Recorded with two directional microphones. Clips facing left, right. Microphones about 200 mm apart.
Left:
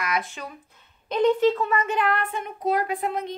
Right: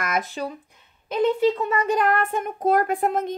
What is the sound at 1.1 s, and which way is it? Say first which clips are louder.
Speech: even; 10° right (ahead or behind).